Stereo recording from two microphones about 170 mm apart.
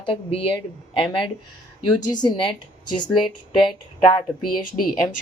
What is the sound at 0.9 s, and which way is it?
Speech, 30° left (ahead or behind).